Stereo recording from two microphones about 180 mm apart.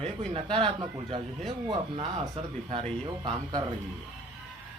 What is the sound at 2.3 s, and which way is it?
Speech, 35° right (ahead or behind).